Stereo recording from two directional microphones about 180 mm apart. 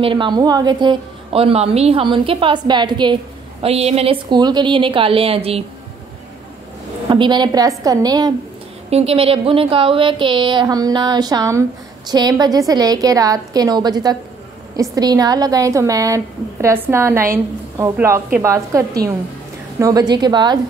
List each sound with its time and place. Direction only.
0.0 s a woman's voice: 25° right (ahead or behind)
3.6 s a woman's voice: 35° right (ahead or behind)
7.1 s a woman's voice: 25° right (ahead or behind)
8.9 s a woman's voice: 35° right (ahead or behind)